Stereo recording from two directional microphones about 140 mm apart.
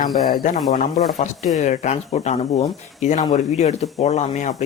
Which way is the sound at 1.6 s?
55° left (ahead or behind).